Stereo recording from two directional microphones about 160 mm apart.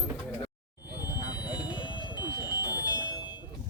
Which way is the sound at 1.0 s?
25° left (ahead or behind).